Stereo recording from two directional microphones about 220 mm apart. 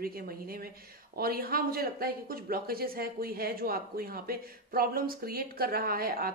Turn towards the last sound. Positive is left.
turn(degrees=-45)  # may be behind; listen again after turning